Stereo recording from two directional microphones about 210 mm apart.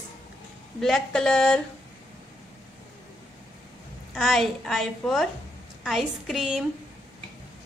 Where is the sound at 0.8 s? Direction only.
Centre (ahead or behind).